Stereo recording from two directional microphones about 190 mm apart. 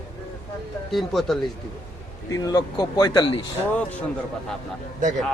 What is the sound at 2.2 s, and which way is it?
A man's voice, 20° left (ahead or behind).